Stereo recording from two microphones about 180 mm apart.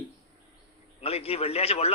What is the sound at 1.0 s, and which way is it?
Speech, 35° left (ahead or behind).